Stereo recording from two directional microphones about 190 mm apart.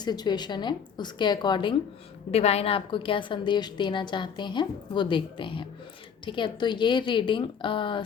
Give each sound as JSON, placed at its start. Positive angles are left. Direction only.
{"t": 0.0, "sound": "a woman's voice", "side_deg": 20}